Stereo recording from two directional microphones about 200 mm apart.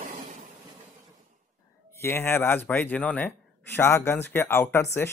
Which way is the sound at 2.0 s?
10° left (ahead or behind).